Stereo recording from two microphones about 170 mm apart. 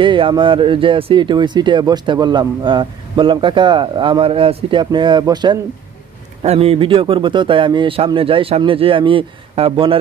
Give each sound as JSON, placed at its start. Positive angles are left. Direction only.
{"t": 0.0, "sound": "speech", "side_deg": -30}
{"t": 6.4, "sound": "speech", "side_deg": -35}